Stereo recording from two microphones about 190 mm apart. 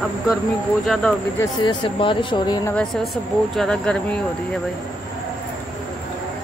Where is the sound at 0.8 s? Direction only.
Centre (ahead or behind).